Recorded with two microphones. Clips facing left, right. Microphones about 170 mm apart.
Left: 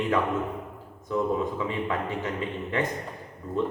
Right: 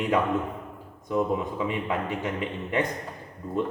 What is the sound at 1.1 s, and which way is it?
A man's voice, 15° right (ahead or behind).